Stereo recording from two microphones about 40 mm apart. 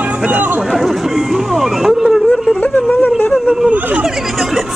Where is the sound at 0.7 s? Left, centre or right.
Centre.